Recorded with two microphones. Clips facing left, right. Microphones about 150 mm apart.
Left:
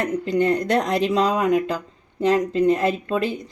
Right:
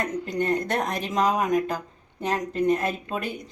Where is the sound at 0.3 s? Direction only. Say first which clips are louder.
Left 6 dB; 80° left.